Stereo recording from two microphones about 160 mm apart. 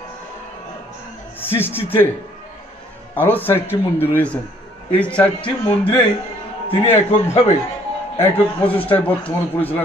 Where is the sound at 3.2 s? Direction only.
10° left (ahead or behind).